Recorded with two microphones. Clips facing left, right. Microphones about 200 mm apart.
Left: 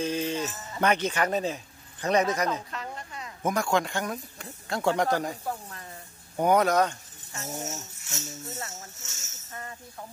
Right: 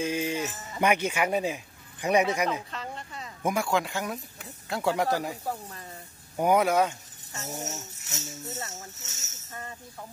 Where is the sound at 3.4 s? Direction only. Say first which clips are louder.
Left 1 dB; 10° right (ahead or behind).